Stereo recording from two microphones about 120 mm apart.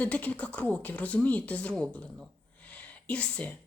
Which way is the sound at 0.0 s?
15° left (ahead or behind).